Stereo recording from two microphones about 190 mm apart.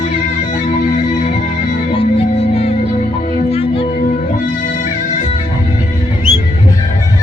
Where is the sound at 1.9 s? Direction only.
30° left (ahead or behind).